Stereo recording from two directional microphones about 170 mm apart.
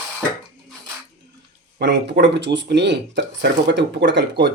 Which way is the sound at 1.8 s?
90° right.